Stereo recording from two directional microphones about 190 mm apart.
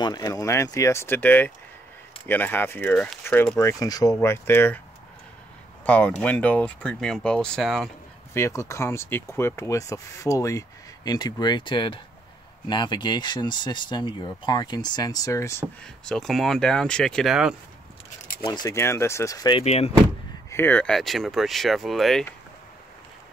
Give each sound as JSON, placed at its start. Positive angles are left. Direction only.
{"t": 0.0, "sound": "speech", "side_deg": 20}
{"t": 5.9, "sound": "speech", "side_deg": 5}
{"t": 8.3, "sound": "speech", "side_deg": 15}
{"t": 16.1, "sound": "speech", "side_deg": 0}
{"t": 18.4, "sound": "speech", "side_deg": 20}
{"t": 20.4, "sound": "speech", "side_deg": 10}